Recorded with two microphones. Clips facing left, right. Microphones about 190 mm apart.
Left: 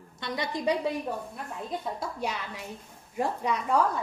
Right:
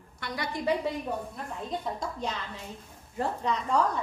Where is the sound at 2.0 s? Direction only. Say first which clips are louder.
Left 1 dB; 10° left (ahead or behind).